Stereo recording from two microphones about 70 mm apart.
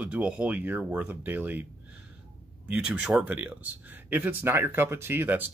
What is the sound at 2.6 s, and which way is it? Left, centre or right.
Speech, centre.